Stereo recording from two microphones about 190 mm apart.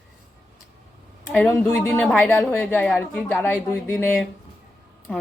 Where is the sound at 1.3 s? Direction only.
10° left (ahead or behind).